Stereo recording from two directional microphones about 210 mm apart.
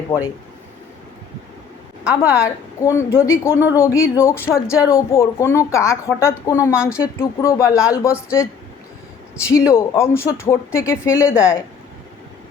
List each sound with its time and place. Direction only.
0.1 s a woman's voice: 15° left (ahead or behind)
2.1 s a woman's voice: 15° left (ahead or behind)
9.5 s a woman's voice: 15° left (ahead or behind)